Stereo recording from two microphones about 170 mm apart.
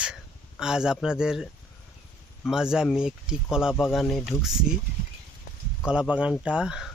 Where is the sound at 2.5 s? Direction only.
5° right (ahead or behind).